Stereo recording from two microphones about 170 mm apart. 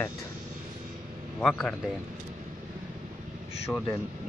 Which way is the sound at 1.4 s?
5° left (ahead or behind).